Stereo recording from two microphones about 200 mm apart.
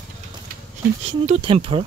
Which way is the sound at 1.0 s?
30° right (ahead or behind).